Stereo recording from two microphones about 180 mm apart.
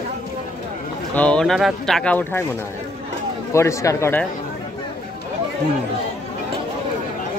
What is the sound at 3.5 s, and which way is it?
Speech, 15° left (ahead or behind).